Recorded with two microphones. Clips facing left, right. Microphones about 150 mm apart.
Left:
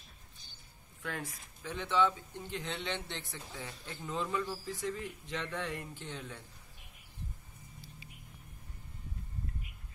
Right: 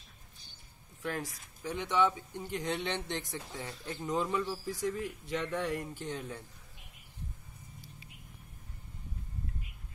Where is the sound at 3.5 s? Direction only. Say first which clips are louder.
Right 2 dB; 40° right (ahead or behind).